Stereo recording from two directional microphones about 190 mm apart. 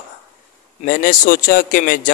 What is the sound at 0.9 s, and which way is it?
A man's voice, 45° left (ahead or behind).